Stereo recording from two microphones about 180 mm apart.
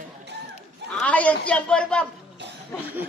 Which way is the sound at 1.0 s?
10° left (ahead or behind).